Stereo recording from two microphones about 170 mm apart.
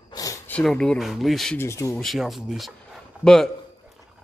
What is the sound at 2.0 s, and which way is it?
Speech, centre (ahead or behind).